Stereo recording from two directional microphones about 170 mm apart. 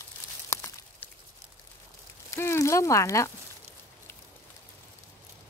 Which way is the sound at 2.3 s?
15° left (ahead or behind).